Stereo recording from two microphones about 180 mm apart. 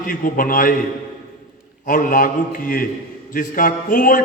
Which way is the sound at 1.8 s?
50° left (ahead or behind).